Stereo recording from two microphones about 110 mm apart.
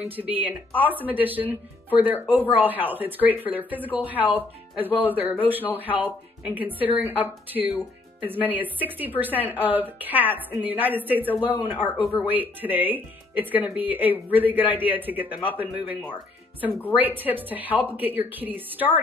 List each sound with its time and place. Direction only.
0.0 s speech: 15° right (ahead or behind)